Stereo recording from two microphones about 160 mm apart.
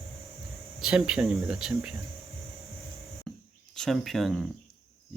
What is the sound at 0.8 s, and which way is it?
Speech, 5° right (ahead or behind).